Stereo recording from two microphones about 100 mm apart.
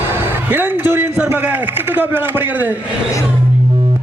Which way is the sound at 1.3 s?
20° right (ahead or behind).